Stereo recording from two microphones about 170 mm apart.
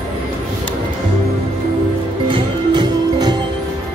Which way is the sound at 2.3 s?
25° right (ahead or behind).